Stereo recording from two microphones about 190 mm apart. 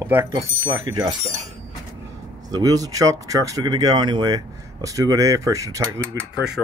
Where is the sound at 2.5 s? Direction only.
20° right (ahead or behind).